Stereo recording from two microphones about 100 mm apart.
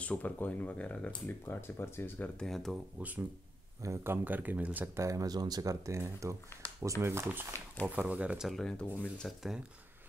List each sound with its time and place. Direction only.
0.0 s speech: 15° left (ahead or behind)
2.4 s speech: 5° left (ahead or behind)
3.0 s speech: 15° right (ahead or behind)
3.8 s speech: 25° right (ahead or behind)
4.9 s speech: 35° right (ahead or behind); by 8.5 s 10° right (ahead or behind)
8.5 s speech: 5° left (ahead or behind)